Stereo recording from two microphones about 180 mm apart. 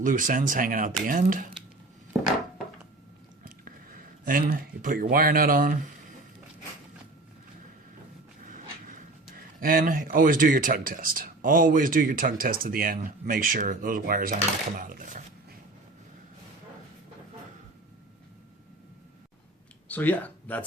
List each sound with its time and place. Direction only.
0.0 s speech: 50° right (ahead or behind)
3.6 s speech: 55° right (ahead or behind)
8.4 s speech: 50° right (ahead or behind)
19.9 s speech: 10° left (ahead or behind)